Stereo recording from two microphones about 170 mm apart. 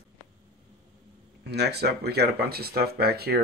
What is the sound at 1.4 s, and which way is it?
Speech, 75° right (ahead or behind).